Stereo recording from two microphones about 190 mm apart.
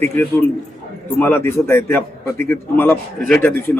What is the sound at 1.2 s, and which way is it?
A man's voice, 10° left (ahead or behind).